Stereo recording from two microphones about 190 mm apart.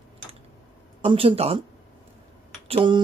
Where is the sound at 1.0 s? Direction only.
30° right (ahead or behind).